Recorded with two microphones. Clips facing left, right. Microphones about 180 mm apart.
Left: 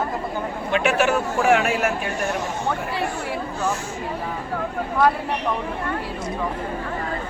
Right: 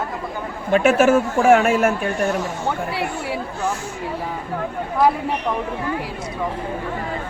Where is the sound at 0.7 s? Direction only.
40° right (ahead or behind).